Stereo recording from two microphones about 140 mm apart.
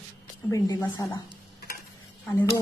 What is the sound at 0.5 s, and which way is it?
Speech, 25° left (ahead or behind).